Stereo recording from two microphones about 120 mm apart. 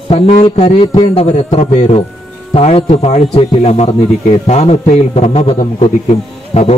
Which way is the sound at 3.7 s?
70° left (ahead or behind).